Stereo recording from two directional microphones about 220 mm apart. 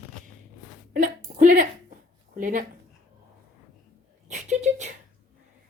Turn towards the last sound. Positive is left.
turn(degrees=-35)  # may be behind; listen again after turning